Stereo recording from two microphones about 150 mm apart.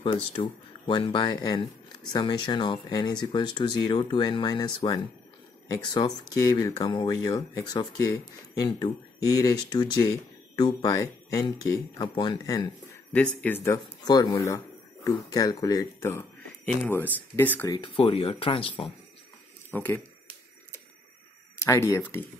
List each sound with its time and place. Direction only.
0.0 s speech: 35° left (ahead or behind)
13.1 s speech: 10° left (ahead or behind)
17.7 s speech: 35° left (ahead or behind)
19.7 s speech: 15° left (ahead or behind)
21.5 s speech: 20° left (ahead or behind)